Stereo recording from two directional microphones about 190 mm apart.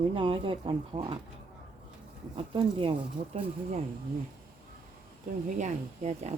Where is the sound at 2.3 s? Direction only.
25° right (ahead or behind).